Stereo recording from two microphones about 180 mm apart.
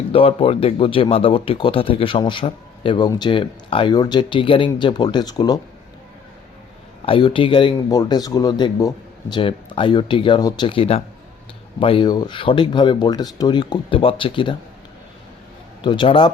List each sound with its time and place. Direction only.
0.1 s speech: 30° left (ahead or behind)
7.0 s speech: 30° left (ahead or behind)
15.8 s speech: 25° left (ahead or behind)